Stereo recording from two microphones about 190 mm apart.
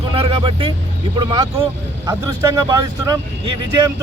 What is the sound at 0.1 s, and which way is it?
Speech, 25° right (ahead or behind).